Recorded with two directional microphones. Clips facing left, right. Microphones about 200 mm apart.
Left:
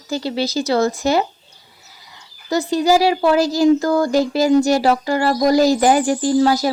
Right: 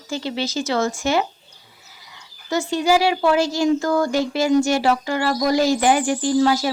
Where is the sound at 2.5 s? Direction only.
35° left (ahead or behind).